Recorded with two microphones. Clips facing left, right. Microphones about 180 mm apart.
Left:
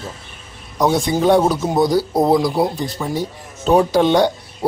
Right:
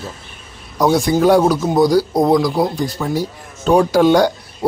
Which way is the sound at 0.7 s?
Centre (ahead or behind).